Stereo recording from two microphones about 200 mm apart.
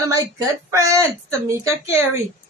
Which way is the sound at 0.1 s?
15° right (ahead or behind).